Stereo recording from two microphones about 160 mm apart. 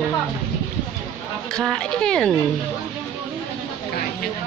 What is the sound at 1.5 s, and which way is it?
Speech, 5° left (ahead or behind).